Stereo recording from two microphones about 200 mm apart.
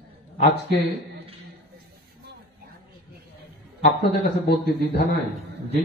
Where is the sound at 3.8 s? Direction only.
55° left (ahead or behind).